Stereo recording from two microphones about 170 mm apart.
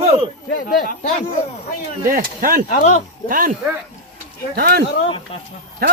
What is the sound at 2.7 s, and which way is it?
Speech, 45° left (ahead or behind).